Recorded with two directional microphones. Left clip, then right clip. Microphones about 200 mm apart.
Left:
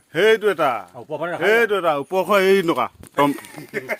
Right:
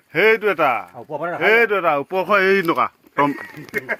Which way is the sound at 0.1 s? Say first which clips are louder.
Right 1 dB; centre (ahead or behind).